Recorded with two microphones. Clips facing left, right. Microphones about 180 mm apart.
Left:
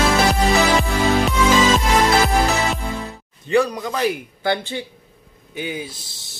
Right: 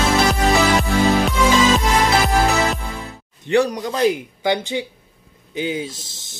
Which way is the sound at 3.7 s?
20° right (ahead or behind).